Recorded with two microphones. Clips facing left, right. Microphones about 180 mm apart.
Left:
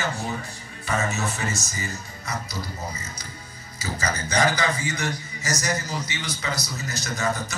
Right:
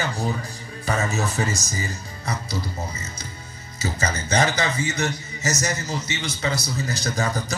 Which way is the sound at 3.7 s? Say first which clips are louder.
Right 2 dB; 25° right (ahead or behind).